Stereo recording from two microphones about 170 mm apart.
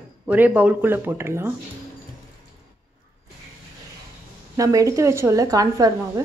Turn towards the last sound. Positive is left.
turn(degrees=-20)  # may be behind; listen again after turning